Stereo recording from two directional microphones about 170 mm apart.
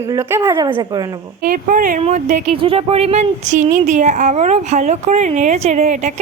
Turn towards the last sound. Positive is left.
turn(degrees=-45)  # may be behind; listen again after turning